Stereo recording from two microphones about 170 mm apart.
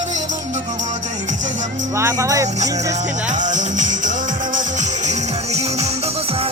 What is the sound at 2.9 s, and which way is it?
Music, 45° right (ahead or behind).